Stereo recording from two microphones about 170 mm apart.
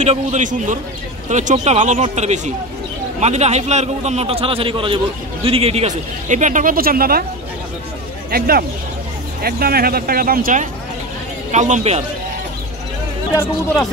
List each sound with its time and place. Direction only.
0.0 s a man's voice: 45° right (ahead or behind); by 7.2 s 60° right (ahead or behind)
8.3 s a man's voice: 65° right (ahead or behind); by 12.0 s 40° right (ahead or behind)